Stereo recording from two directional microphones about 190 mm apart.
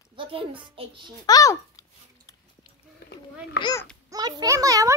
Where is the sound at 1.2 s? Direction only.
20° left (ahead or behind).